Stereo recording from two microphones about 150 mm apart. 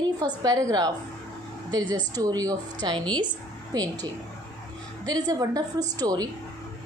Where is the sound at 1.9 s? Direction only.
25° right (ahead or behind).